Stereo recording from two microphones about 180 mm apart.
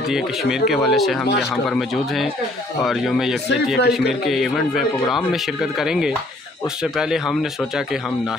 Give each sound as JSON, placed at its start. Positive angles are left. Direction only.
{"t": 0.8, "sound": "speech", "side_deg": 0}
{"t": 2.8, "sound": "speech", "side_deg": 0}
{"t": 3.7, "sound": "speech", "side_deg": 65}
{"t": 4.3, "sound": "speech", "side_deg": 0}